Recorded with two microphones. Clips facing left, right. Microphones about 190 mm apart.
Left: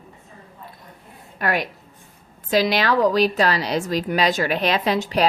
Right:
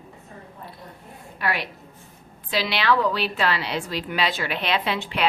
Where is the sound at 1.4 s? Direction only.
45° left (ahead or behind).